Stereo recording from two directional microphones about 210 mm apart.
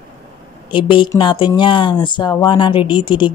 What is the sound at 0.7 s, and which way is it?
Speech, 20° left (ahead or behind).